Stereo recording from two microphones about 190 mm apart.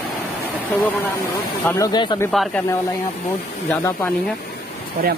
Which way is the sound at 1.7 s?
20° left (ahead or behind).